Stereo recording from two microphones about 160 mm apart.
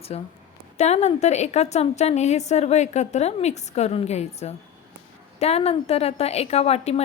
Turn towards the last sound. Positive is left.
turn(degrees=40)  # may be behind; listen again after turning